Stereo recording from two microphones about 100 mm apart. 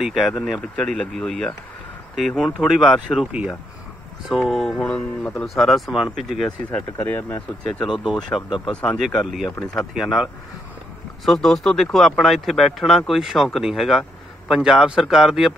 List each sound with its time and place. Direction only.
0.0 s speech: centre (ahead or behind)
3.3 s speech: 15° right (ahead or behind)
4.3 s speech: centre (ahead or behind)
6.7 s speech: 15° left (ahead or behind)
8.3 s speech: 5° left (ahead or behind)